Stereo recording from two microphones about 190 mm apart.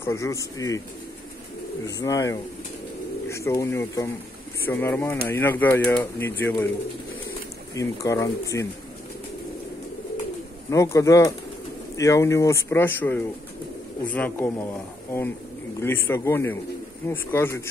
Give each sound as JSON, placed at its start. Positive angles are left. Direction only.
{"t": 0.0, "sound": "speech", "side_deg": 15}
{"t": 1.9, "sound": "speech", "side_deg": 20}
{"t": 7.7, "sound": "speech", "side_deg": 15}
{"t": 10.7, "sound": "speech", "side_deg": 15}
{"t": 15.8, "sound": "speech", "side_deg": 10}